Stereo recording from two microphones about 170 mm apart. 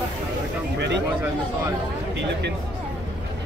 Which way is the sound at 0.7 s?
90° right.